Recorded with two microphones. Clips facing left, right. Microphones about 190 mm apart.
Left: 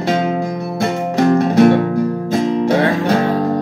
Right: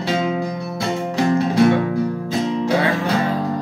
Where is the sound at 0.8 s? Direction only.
50° left (ahead or behind).